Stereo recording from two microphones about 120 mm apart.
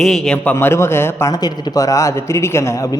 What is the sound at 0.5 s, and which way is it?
Speech, 20° left (ahead or behind).